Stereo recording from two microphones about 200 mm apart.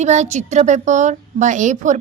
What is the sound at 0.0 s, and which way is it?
A woman's voice, 35° right (ahead or behind).